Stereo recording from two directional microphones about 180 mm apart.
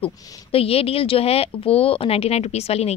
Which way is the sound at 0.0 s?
30° left (ahead or behind).